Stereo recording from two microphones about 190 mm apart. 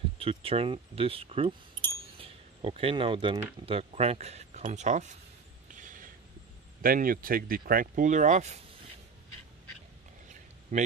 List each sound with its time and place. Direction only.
0.2 s speech: 30° right (ahead or behind)
2.1 s a sound: 30° right (ahead or behind)
3.6 s speech: 30° right (ahead or behind)
5.8 s a sound: 45° right (ahead or behind)
6.8 s speech: 50° right (ahead or behind)
10.7 s speech: 40° right (ahead or behind)